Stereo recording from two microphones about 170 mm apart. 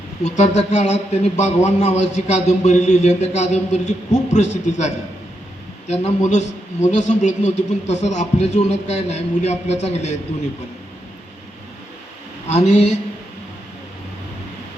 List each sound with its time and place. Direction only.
0.3 s a man's voice: 40° left (ahead or behind)
12.5 s a man's voice: 40° left (ahead or behind)